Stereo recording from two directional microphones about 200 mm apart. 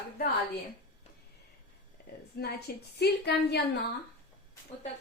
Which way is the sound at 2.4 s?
55° left (ahead or behind).